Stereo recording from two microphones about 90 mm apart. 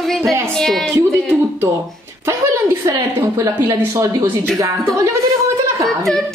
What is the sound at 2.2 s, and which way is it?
Speech, 30° right (ahead or behind).